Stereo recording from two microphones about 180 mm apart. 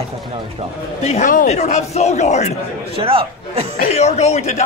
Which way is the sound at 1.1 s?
45° left (ahead or behind).